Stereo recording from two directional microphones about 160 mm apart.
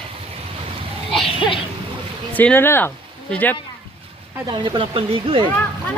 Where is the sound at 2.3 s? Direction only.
10° left (ahead or behind).